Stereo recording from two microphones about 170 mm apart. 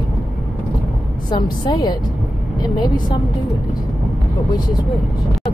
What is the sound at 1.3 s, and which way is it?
Speech, 25° left (ahead or behind).